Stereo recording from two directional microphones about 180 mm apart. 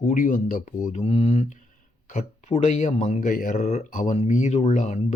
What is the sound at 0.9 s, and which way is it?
Speech, 35° left (ahead or behind).